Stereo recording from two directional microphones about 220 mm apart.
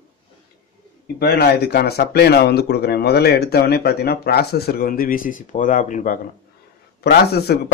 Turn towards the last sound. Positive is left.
turn(degrees=45)  # may be behind; listen again after turning